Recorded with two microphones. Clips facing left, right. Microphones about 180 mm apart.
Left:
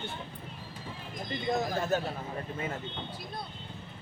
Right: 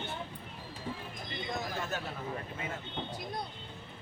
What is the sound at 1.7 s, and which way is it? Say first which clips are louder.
Speech: left 7 dB; 35° left (ahead or behind).